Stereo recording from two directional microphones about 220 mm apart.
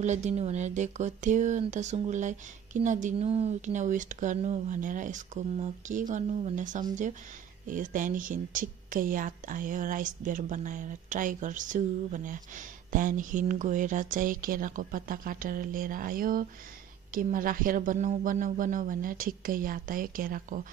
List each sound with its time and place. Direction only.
0.0 s a woman's voice: 30° right (ahead or behind)